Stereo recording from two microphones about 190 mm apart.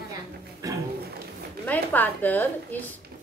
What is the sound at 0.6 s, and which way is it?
Music, 15° right (ahead or behind).